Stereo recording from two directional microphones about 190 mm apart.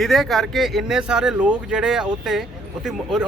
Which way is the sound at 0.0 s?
Centre (ahead or behind).